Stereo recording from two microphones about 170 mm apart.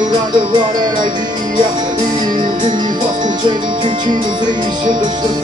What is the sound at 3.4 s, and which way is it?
Music, 25° right (ahead or behind).